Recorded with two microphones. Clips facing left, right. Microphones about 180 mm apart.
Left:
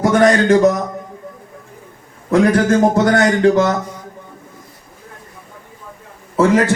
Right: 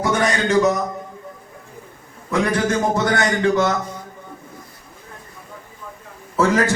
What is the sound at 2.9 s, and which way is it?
Speech, 40° left (ahead or behind).